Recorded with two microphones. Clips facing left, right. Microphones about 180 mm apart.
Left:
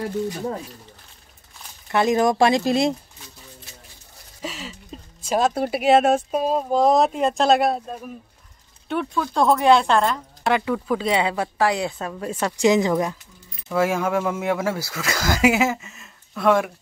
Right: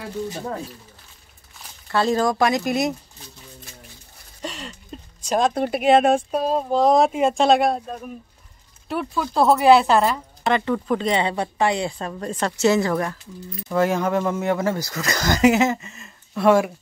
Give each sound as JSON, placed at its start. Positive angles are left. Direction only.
{"t": 1.9, "sound": "speech", "side_deg": 20}
{"t": 4.4, "sound": "speech", "side_deg": 5}
{"t": 10.5, "sound": "speech", "side_deg": 5}
{"t": 13.7, "sound": "speech", "side_deg": 5}